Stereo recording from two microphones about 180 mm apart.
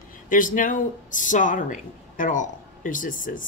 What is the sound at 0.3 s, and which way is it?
Speech, 50° left (ahead or behind).